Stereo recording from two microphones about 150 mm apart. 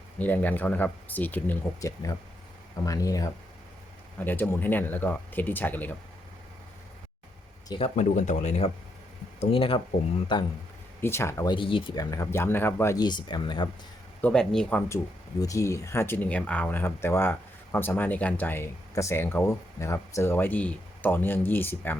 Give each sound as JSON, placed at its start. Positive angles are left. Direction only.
{"t": 0.2, "sound": "speech", "side_deg": 10}
{"t": 7.9, "sound": "speech", "side_deg": 50}
{"t": 9.4, "sound": "speech", "side_deg": 35}
{"t": 11.0, "sound": "speech", "side_deg": 15}
{"t": 11.5, "sound": "speech", "side_deg": 35}
{"t": 14.2, "sound": "speech", "side_deg": 5}